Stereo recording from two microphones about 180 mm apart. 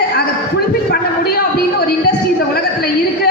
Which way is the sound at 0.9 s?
60° left (ahead or behind).